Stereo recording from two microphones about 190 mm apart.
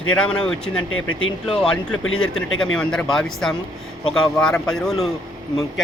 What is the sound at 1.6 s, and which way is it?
Speech, 5° left (ahead or behind).